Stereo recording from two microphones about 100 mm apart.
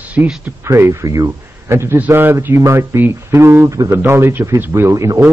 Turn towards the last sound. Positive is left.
turn(degrees=-30)  # may be behind; listen again after turning